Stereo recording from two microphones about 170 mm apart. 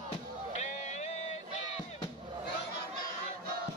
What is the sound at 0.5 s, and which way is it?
Music, 45° left (ahead or behind).